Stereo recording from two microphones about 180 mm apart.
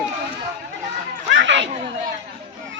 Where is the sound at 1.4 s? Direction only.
90° right.